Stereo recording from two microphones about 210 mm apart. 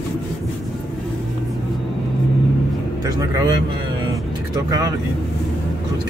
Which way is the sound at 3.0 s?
15° right (ahead or behind).